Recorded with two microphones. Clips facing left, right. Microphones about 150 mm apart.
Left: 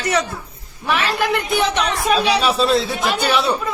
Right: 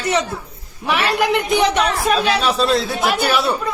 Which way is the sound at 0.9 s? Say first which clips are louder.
Right 2 dB; 15° right (ahead or behind).